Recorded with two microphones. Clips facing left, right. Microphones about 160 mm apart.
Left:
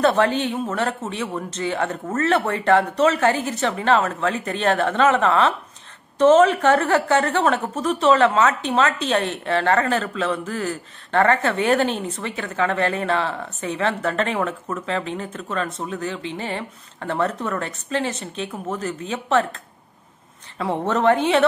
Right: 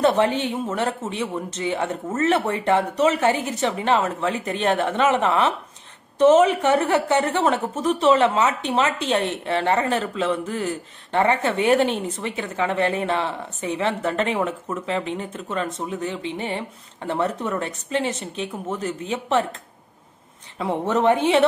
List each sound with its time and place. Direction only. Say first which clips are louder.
0.0 s a woman's voice: left 1 dB; 20° right (ahead or behind)
20.5 s a woman's voice: even; 15° right (ahead or behind)